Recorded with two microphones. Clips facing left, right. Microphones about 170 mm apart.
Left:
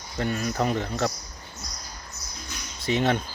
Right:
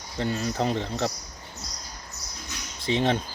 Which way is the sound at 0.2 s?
25° right (ahead or behind).